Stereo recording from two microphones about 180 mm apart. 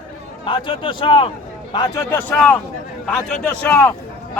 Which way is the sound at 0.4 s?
30° left (ahead or behind).